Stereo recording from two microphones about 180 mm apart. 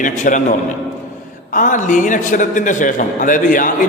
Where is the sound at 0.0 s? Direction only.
45° left (ahead or behind).